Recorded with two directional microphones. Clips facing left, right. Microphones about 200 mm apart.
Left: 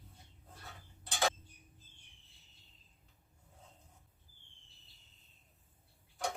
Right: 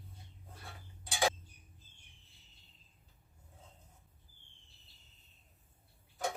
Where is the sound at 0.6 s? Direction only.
10° right (ahead or behind).